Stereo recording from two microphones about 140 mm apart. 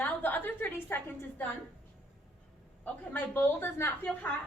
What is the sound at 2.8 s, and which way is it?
A woman's voice, 15° left (ahead or behind).